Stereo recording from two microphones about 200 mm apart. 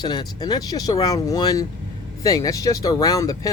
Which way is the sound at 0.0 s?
20° left (ahead or behind).